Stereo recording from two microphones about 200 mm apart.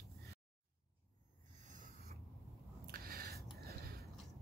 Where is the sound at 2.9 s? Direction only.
50° right (ahead or behind).